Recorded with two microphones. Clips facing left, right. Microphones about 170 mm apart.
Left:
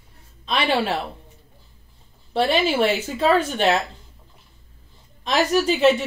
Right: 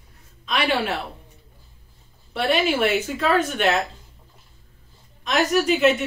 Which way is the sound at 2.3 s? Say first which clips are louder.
Left 1 dB; 30° left (ahead or behind).